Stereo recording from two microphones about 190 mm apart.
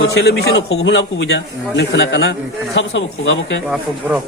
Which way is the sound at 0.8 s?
75° left (ahead or behind).